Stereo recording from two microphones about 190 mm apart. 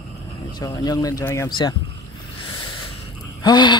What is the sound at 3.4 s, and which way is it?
Gasp, 25° left (ahead or behind).